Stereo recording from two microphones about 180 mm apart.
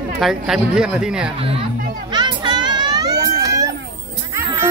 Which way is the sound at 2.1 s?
25° right (ahead or behind).